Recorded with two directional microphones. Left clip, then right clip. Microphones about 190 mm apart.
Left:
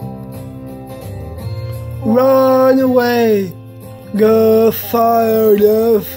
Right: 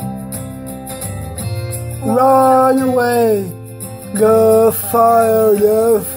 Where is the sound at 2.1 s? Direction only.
25° left (ahead or behind).